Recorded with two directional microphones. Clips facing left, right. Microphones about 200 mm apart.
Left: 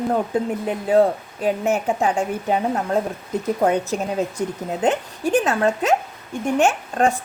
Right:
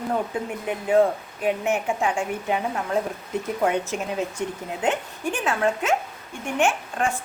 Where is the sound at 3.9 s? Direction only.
40° left (ahead or behind).